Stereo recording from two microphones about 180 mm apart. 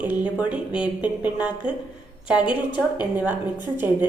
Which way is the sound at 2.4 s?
25° left (ahead or behind).